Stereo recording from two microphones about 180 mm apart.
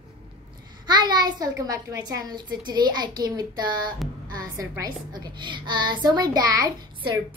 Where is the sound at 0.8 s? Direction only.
25° right (ahead or behind).